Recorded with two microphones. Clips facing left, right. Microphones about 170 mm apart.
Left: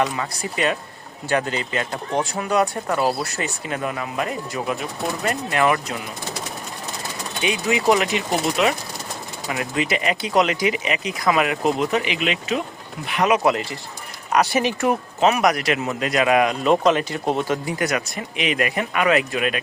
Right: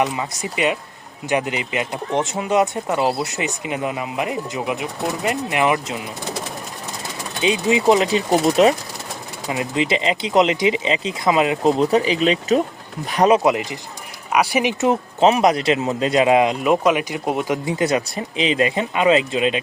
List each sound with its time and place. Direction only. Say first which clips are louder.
0.0 s speech: right 1 dB; 20° right (ahead or behind)
7.4 s speech: right 3 dB; 25° right (ahead or behind)
8.4 s speech: right 6 dB; 40° right (ahead or behind)
9.5 s speech: right 3 dB; 25° right (ahead or behind)
13.4 s speech: right 2 dB; 15° right (ahead or behind)
16.6 s speech: even; 10° right (ahead or behind)
17.7 s speech: right 4 dB; 25° right (ahead or behind)